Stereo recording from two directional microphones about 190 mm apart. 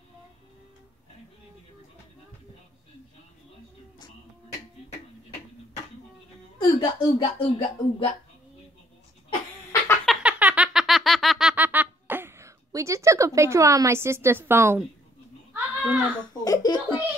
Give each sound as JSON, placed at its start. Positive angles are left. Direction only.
{"t": 6.6, "sound": "speech", "side_deg": 25}
{"t": 10.0, "sound": "a sound", "side_deg": -5}
{"t": 16.3, "sound": "speech", "side_deg": 20}